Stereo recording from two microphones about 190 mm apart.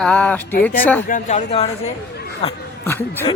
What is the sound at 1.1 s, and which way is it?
Speech, 35° left (ahead or behind).